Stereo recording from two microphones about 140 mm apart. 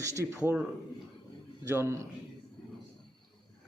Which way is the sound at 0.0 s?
20° right (ahead or behind).